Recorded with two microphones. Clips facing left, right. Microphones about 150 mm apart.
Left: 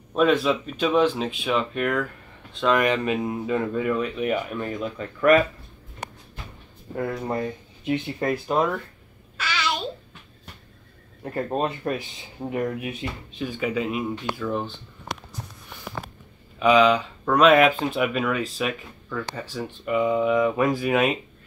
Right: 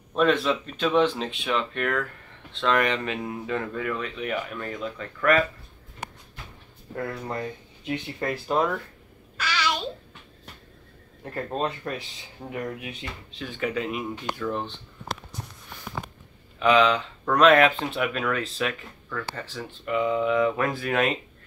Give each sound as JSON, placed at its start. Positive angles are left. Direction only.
{"t": 0.1, "sound": "speech", "side_deg": 5}
{"t": 7.0, "sound": "speech", "side_deg": 20}
{"t": 8.5, "sound": "speech", "side_deg": 0}
{"t": 9.4, "sound": "babbling", "side_deg": 0}
{"t": 11.3, "sound": "speech", "side_deg": 20}
{"t": 13.4, "sound": "speech", "side_deg": 10}
{"t": 16.5, "sound": "speech", "side_deg": 10}